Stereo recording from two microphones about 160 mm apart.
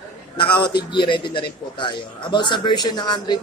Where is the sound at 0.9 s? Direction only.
30° left (ahead or behind).